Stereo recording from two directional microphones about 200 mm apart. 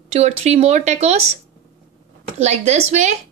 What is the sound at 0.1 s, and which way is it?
Speech, 30° right (ahead or behind).